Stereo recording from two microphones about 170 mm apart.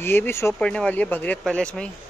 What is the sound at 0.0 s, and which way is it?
Speech, 15° left (ahead or behind).